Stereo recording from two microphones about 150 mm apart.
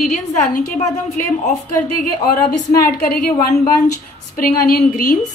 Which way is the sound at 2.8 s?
80° left.